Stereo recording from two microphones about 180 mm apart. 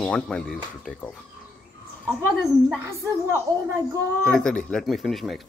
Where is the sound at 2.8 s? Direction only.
15° right (ahead or behind).